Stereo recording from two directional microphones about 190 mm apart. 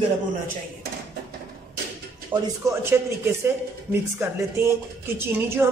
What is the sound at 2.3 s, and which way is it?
A woman's voice, 15° right (ahead or behind).